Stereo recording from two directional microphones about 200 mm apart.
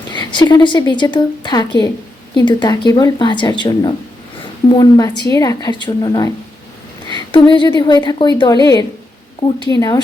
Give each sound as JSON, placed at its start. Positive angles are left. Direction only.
{"t": 0.1, "sound": "a woman's voice", "side_deg": 20}